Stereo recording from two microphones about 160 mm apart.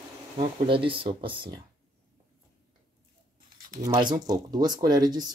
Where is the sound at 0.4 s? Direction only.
35° right (ahead or behind).